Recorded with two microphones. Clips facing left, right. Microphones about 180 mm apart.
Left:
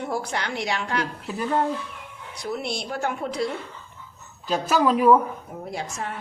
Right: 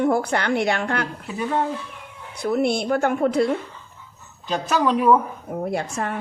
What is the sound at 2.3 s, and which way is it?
Speech, 55° right (ahead or behind).